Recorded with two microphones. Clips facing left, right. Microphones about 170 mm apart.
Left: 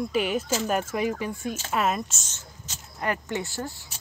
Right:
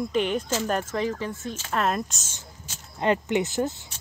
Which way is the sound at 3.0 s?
20° right (ahead or behind).